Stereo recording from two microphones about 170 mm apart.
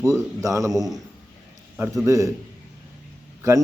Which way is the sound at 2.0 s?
20° right (ahead or behind).